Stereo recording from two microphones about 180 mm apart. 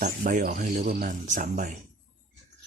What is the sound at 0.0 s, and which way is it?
Speech, 45° right (ahead or behind).